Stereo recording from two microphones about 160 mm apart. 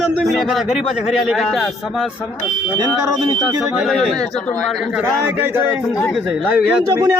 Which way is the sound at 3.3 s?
Centre (ahead or behind).